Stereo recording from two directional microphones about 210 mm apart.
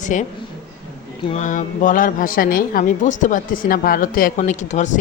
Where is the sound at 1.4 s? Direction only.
35° left (ahead or behind).